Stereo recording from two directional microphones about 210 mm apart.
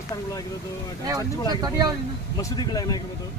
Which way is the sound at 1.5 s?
20° right (ahead or behind).